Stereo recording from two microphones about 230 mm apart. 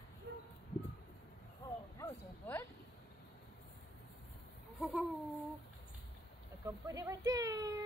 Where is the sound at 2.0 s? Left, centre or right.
Centre.